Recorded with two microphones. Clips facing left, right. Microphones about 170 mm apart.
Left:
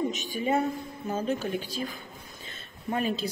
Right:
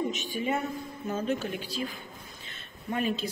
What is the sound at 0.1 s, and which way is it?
A woman's voice, 40° left (ahead or behind).